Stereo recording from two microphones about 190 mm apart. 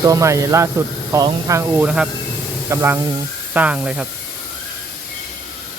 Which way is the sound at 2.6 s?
10° right (ahead or behind).